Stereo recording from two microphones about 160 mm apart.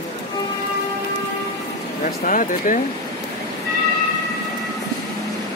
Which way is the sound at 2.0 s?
55° left (ahead or behind).